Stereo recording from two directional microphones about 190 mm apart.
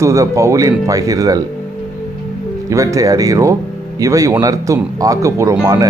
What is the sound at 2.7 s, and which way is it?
Speech, 15° right (ahead or behind).